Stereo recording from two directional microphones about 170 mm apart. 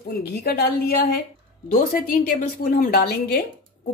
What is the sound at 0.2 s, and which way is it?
A woman's voice, 65° left (ahead or behind).